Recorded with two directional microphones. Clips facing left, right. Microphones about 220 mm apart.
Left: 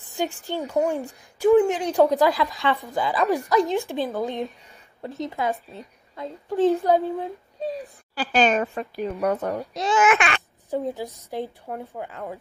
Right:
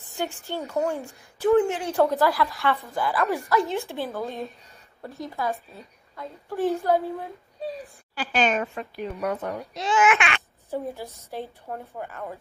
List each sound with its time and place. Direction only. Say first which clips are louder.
0.1 s a woman's voice: left 3 dB; 15° left (ahead or behind)
8.1 s a child's voice: left 3 dB; 35° left (ahead or behind)
10.7 s a woman's voice: left 4 dB; 15° left (ahead or behind)